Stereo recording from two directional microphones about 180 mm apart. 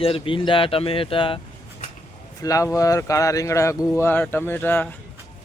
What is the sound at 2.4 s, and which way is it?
Speech, 20° left (ahead or behind).